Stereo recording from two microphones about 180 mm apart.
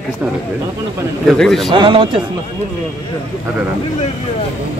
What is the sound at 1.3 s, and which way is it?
Speech, 5° left (ahead or behind).